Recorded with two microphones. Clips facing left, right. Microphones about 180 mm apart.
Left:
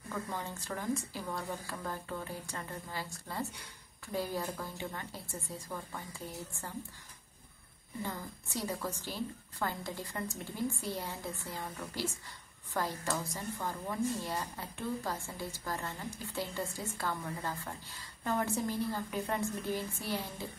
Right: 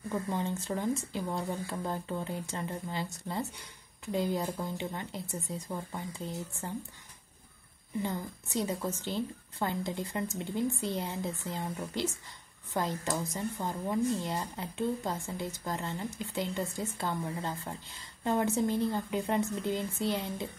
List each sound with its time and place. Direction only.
0.1 s speech: 20° right (ahead or behind)
8.0 s speech: 20° right (ahead or behind)